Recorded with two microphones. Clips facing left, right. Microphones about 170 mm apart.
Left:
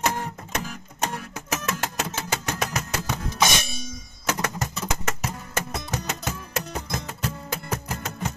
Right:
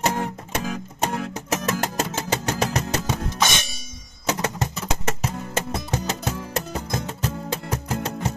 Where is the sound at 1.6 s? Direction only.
40° right (ahead or behind).